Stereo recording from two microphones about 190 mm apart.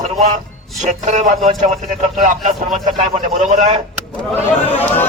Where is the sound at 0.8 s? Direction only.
40° right (ahead or behind).